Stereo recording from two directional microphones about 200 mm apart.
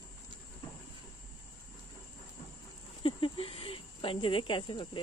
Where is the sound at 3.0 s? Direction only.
25° left (ahead or behind).